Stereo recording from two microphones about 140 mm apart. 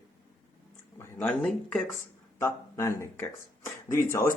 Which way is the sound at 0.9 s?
10° left (ahead or behind).